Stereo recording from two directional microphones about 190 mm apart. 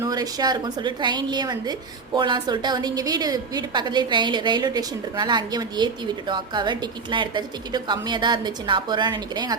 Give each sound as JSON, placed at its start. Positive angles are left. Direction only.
{"t": 0.0, "sound": "a woman's voice", "side_deg": -20}